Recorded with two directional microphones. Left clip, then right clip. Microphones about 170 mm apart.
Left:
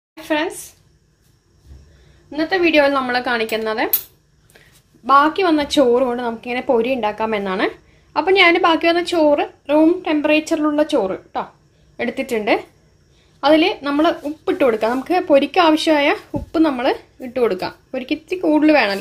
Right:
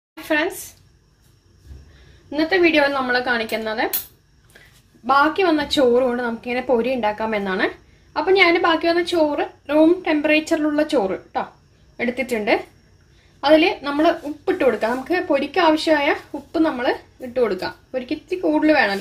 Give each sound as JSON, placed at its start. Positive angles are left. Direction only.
{"t": 0.3, "sound": "a woman's voice", "side_deg": 20}
{"t": 2.2, "sound": "a woman's voice", "side_deg": 0}
{"t": 2.6, "sound": "speech", "side_deg": 25}
{"t": 5.0, "sound": "speech", "side_deg": 25}
{"t": 9.8, "sound": "a woman's voice", "side_deg": 20}